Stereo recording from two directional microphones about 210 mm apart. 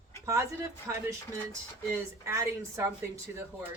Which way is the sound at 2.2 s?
15° right (ahead or behind).